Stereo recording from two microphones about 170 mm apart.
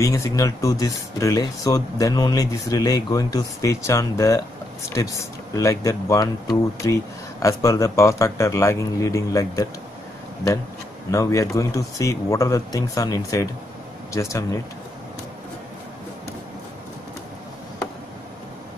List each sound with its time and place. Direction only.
0.0 s speech: 20° left (ahead or behind)
11.1 s speech: 20° left (ahead or behind)